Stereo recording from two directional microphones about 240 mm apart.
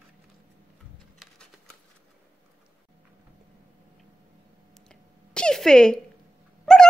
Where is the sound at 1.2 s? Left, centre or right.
Centre.